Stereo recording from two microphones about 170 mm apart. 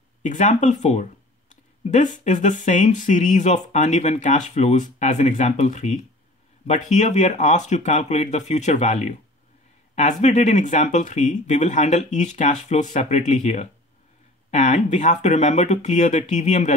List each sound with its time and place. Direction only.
0.2 s speech: 45° left (ahead or behind)
10.2 s speech: 45° left (ahead or behind)